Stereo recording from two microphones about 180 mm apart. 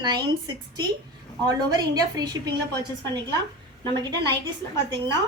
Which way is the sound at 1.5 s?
20° right (ahead or behind).